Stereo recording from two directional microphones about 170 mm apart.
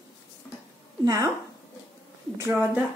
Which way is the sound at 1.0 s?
20° right (ahead or behind).